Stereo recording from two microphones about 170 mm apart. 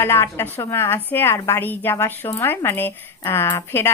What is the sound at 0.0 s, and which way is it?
Speech, 15° left (ahead or behind).